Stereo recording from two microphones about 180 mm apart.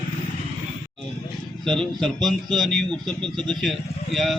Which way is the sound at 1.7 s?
5° left (ahead or behind).